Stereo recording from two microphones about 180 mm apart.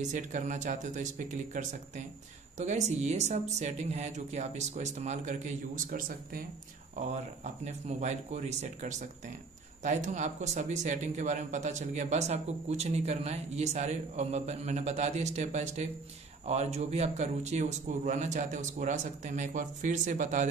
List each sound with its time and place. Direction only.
0.1 s a man's voice: 45° right (ahead or behind)